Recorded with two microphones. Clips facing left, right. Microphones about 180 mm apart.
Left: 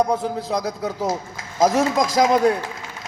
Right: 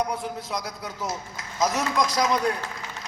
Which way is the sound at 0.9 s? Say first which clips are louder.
Left 8 dB; 30° left (ahead or behind).